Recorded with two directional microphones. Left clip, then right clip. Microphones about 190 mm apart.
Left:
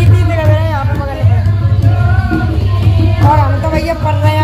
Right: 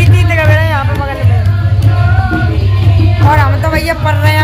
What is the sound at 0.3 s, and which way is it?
Music, 5° right (ahead or behind).